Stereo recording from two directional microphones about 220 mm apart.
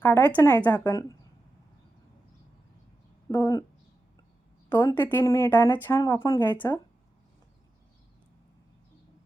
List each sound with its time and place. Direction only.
0.0 s speech: 10° left (ahead or behind)
3.2 s speech: 15° left (ahead or behind)
4.8 s speech: 10° left (ahead or behind)